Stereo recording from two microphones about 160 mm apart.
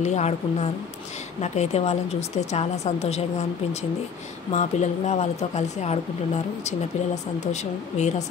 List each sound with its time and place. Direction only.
0.0 s speech: 45° left (ahead or behind)
4.5 s speech: 45° left (ahead or behind)